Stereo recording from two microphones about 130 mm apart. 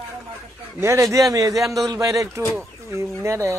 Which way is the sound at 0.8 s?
20° right (ahead or behind).